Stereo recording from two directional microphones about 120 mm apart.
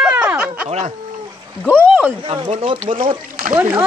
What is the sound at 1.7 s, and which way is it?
Speech, 15° right (ahead or behind).